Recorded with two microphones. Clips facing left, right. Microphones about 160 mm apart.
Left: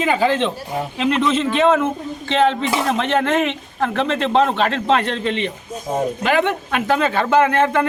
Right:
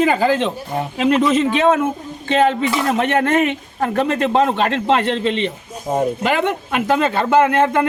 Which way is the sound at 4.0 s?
10° right (ahead or behind).